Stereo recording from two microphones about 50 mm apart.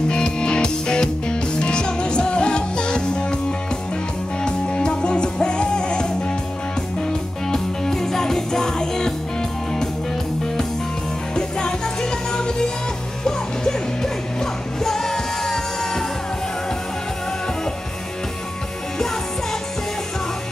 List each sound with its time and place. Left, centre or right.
0.1 s music: centre
4.5 s music: centre
7.4 s music: centre
11.3 s music: centre